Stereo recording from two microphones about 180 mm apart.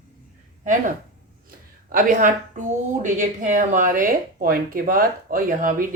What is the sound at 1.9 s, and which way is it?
Speech, 45° right (ahead or behind).